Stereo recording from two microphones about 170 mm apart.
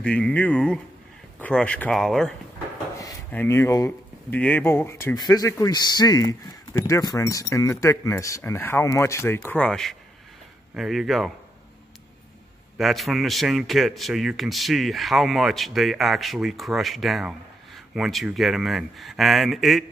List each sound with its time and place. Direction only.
0.0 s a man's voice: 5° left (ahead or behind)
3.3 s a man's voice: 10° left (ahead or behind)
12.7 s a man's voice: centre (ahead or behind)